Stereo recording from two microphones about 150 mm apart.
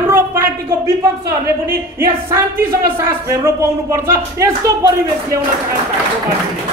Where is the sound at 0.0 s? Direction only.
15° right (ahead or behind).